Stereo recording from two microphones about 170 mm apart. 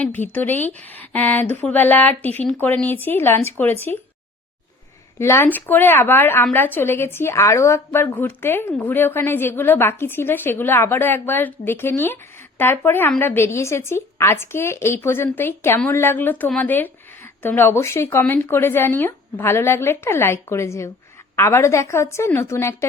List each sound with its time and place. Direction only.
0.0 s speech: 10° left (ahead or behind)
5.2 s speech: 15° left (ahead or behind)